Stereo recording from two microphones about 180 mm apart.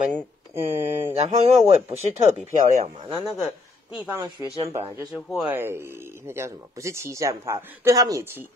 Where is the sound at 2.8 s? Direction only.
35° right (ahead or behind).